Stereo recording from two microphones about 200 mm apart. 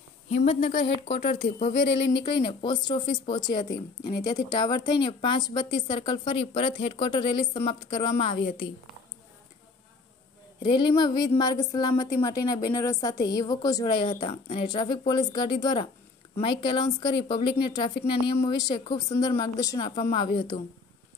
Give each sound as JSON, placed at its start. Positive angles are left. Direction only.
{"t": 0.4, "sound": "speech", "side_deg": 30}
{"t": 2.4, "sound": "speech", "side_deg": 25}
{"t": 10.6, "sound": "speech", "side_deg": 20}